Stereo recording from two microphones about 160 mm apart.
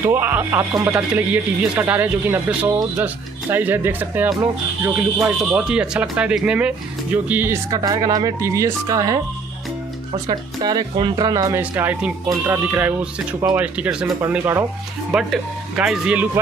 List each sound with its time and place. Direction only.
0.0 s speech: 15° right (ahead or behind)
5.5 s speech: 5° right (ahead or behind)
10.2 s speech: 25° right (ahead or behind); by 14.1 s 5° right (ahead or behind)
14.2 s speech: 15° right (ahead or behind)
15.1 s speech: 5° right (ahead or behind)